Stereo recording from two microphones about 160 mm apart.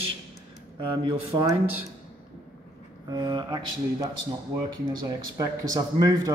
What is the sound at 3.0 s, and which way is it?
A man's voice, 25° right (ahead or behind).